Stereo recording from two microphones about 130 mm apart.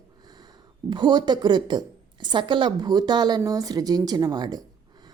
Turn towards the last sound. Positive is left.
turn(degrees=-30)  # may be behind; listen again after turning